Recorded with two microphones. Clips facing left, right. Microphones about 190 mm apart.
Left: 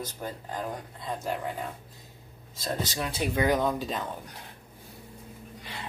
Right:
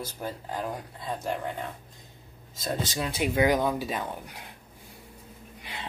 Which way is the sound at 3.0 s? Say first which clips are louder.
Right 3 dB; 10° right (ahead or behind).